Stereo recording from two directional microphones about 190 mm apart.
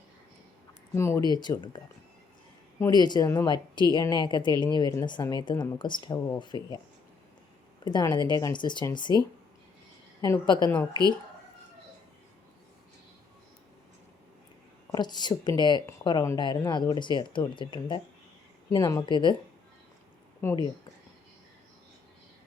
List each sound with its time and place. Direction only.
0.9 s speech: 15° left (ahead or behind)
2.8 s speech: 20° left (ahead or behind)
7.9 s speech: 25° left (ahead or behind)
10.2 s speech: 20° left (ahead or behind)
14.9 s speech: 20° left (ahead or behind)
20.4 s speech: 15° left (ahead or behind)